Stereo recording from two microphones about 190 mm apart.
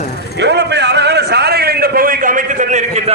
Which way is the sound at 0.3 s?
65° right (ahead or behind).